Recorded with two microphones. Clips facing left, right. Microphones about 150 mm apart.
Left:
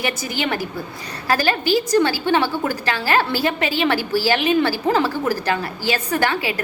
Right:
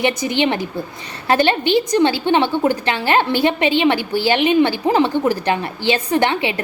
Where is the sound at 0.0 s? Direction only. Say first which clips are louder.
Right 6 dB; 20° right (ahead or behind).